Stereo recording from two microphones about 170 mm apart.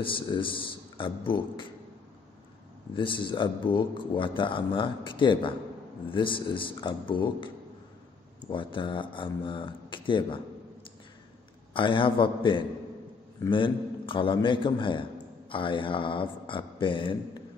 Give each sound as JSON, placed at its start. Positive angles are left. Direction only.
{"t": 0.0, "sound": "a man's voice", "side_deg": 30}
{"t": 3.0, "sound": "a man's voice", "side_deg": 30}
{"t": 8.5, "sound": "a man's voice", "side_deg": 30}
{"t": 11.7, "sound": "a man's voice", "side_deg": 30}